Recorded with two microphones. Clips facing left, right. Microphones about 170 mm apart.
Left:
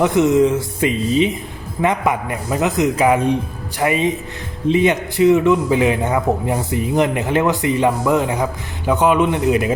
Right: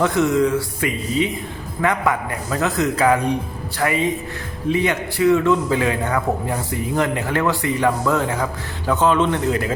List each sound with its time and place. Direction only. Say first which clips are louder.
0.0 s a man's voice: left 4 dB; 20° left (ahead or behind)